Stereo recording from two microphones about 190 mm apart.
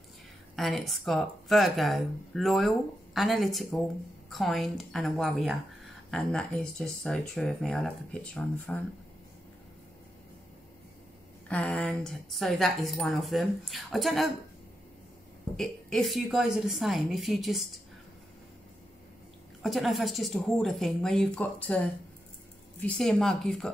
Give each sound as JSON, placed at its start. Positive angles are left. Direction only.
{"t": 0.6, "sound": "a woman's voice", "side_deg": 0}
{"t": 11.4, "sound": "a woman's voice", "side_deg": 5}
{"t": 15.5, "sound": "a woman's voice", "side_deg": 0}
{"t": 19.6, "sound": "a woman's voice", "side_deg": 0}